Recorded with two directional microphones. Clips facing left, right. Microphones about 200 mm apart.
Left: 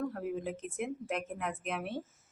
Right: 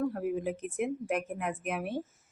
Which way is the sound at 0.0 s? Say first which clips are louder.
Right 4 dB; 10° right (ahead or behind).